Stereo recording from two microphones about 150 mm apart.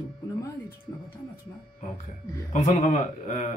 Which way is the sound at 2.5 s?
50° left (ahead or behind).